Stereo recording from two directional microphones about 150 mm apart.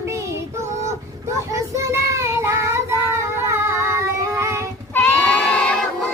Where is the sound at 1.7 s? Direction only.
20° right (ahead or behind).